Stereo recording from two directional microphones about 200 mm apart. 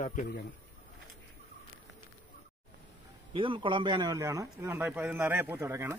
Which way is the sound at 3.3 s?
25° right (ahead or behind).